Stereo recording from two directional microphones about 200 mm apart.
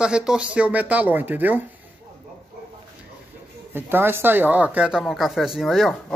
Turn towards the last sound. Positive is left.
turn(degrees=0)  # may be behind; listen again after turning